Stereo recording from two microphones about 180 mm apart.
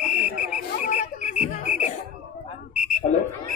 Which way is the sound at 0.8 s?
45° left (ahead or behind).